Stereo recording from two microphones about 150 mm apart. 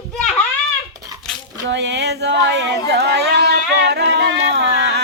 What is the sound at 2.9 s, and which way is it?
Music, 90° right.